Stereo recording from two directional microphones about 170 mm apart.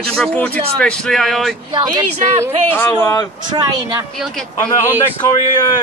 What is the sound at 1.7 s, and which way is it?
Speech, 25° right (ahead or behind).